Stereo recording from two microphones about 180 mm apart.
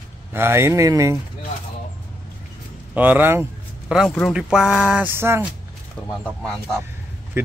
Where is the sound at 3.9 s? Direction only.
Centre (ahead or behind).